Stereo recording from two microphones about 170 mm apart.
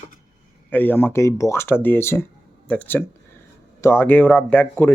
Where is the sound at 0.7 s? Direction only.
10° left (ahead or behind).